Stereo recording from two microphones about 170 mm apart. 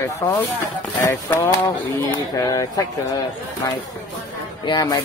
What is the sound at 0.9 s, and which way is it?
A man's voice, 15° left (ahead or behind).